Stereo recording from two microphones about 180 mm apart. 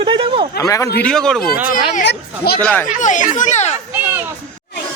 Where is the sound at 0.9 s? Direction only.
5° left (ahead or behind).